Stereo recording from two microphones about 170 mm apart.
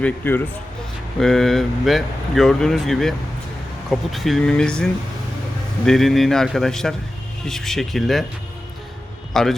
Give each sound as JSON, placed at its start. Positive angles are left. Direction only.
{"t": 0.0, "sound": "speech", "side_deg": 10}
{"t": 9.3, "sound": "a man's voice", "side_deg": 0}